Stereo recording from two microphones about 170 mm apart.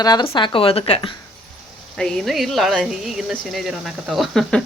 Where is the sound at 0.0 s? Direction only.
25° left (ahead or behind).